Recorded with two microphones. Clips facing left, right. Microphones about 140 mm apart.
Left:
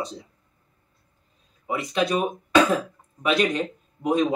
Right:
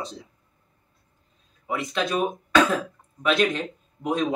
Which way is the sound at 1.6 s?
5° left (ahead or behind).